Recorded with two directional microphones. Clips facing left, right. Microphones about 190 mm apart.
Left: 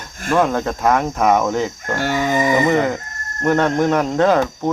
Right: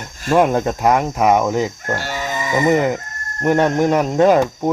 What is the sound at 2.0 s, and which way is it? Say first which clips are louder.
Livestock: left 7 dB; 55° left (ahead or behind).